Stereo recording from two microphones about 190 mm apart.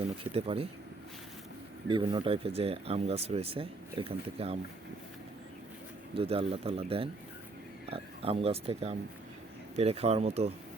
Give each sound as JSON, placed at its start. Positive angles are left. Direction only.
{"t": 0.3, "sound": "speech", "side_deg": -30}
{"t": 1.9, "sound": "speech", "side_deg": -25}
{"t": 6.1, "sound": "speech", "side_deg": -30}